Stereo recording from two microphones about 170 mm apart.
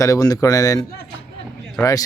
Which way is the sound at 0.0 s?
20° left (ahead or behind).